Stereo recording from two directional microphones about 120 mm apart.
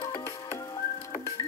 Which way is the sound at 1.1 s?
30° left (ahead or behind).